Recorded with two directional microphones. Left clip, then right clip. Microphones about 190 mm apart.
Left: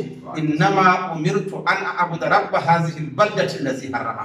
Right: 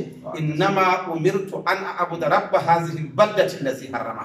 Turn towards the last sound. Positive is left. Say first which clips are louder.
# right 1 dB
turn(degrees=-5)  # may be behind; listen again after turning